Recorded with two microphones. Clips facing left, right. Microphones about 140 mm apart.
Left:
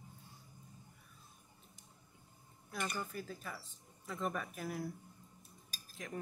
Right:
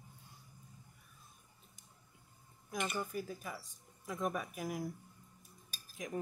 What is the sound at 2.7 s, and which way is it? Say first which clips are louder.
Speech: right 3 dB; 15° right (ahead or behind).